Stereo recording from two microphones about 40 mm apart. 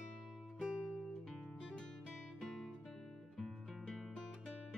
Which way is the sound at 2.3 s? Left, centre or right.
Centre.